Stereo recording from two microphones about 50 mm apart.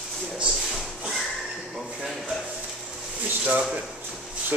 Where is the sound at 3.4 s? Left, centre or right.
Right.